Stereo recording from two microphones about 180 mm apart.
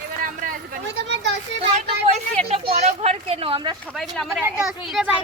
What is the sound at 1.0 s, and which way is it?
Children playing, 80° right.